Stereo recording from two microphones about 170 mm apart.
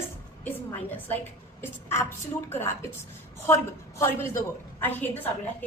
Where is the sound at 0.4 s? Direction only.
10° left (ahead or behind).